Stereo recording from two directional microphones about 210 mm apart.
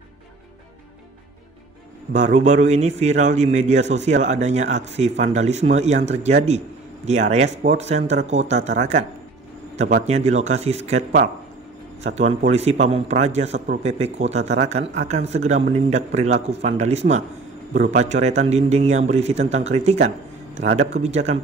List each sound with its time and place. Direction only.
2.1 s a man's voice: 35° right (ahead or behind)
10.0 s a man's voice: 30° right (ahead or behind)
12.2 s a man's voice: 30° right (ahead or behind)